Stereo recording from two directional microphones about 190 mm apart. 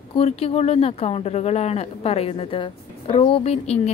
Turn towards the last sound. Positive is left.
turn(degrees=35)  # may be behind; listen again after turning